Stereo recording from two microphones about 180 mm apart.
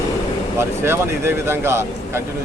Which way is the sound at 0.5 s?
15° right (ahead or behind).